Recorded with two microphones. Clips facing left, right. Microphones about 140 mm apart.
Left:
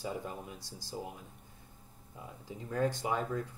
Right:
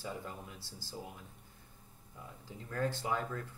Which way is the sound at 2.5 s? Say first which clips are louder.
Left 4 dB; 15° left (ahead or behind).